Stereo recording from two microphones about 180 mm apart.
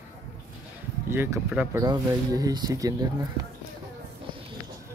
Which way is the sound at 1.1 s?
10° right (ahead or behind).